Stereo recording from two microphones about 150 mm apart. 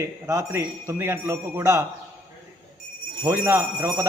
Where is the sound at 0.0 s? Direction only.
20° right (ahead or behind).